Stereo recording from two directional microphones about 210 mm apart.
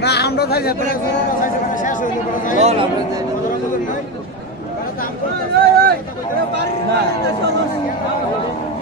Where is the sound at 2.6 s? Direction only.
30° right (ahead or behind).